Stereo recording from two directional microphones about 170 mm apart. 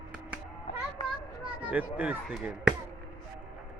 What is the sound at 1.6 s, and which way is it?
A man's voice, 10° right (ahead or behind).